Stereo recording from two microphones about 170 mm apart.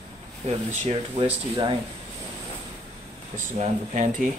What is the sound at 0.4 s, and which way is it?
Speech, 40° right (ahead or behind).